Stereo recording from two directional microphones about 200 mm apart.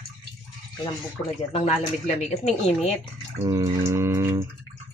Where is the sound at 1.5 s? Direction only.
30° left (ahead or behind).